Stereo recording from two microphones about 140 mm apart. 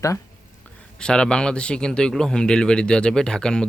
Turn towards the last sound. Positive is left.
turn(degrees=5)  # may be behind; listen again after turning